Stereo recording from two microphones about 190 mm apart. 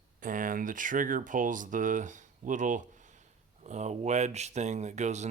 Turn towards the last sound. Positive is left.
turn(degrees=-35)  # may be behind; listen again after turning